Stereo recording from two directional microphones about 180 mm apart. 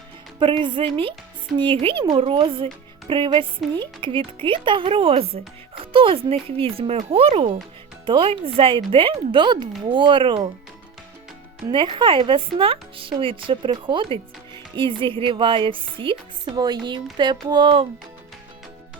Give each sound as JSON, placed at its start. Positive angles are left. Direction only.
{"t": 0.3, "sound": "speech", "side_deg": -25}
{"t": 11.7, "sound": "speech", "side_deg": -25}